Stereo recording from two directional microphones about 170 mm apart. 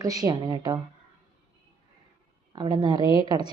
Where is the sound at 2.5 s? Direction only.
25° right (ahead or behind).